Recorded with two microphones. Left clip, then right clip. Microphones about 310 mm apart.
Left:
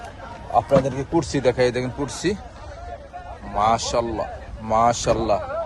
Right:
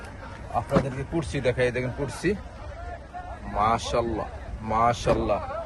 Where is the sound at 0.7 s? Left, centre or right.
Left.